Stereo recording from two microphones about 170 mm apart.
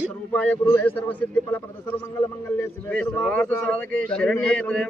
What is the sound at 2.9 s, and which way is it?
A man's voice, 5° left (ahead or behind).